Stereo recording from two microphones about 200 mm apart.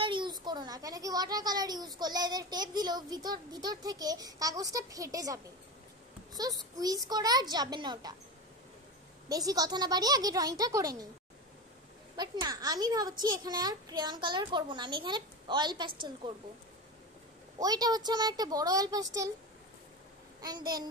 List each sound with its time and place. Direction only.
0.0 s a child's voice: 25° right (ahead or behind)
9.3 s a child's voice: 20° right (ahead or behind)
12.2 s a child's voice: 20° right (ahead or behind)
17.6 s a child's voice: 20° right (ahead or behind)
20.4 s a child's voice: 20° right (ahead or behind)